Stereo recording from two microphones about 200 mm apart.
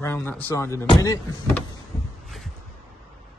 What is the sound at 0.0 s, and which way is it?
A man's voice, 10° left (ahead or behind).